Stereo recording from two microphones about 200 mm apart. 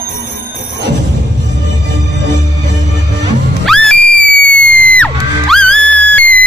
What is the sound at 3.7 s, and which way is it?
Music, 5° left (ahead or behind).